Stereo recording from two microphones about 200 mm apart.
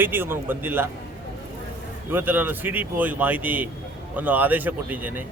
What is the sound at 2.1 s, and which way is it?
Speech, 10° right (ahead or behind).